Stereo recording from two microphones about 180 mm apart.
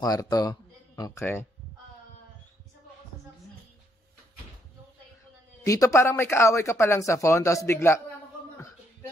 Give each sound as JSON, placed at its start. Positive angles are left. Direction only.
{"t": 0.0, "sound": "speech", "side_deg": 20}
{"t": 5.6, "sound": "speech", "side_deg": 20}